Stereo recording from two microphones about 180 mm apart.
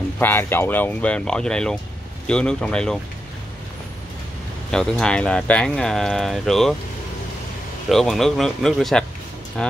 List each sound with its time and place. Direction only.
0.2 s speech: 10° left (ahead or behind)
4.6 s speech: 5° left (ahead or behind)
7.9 s speech: centre (ahead or behind)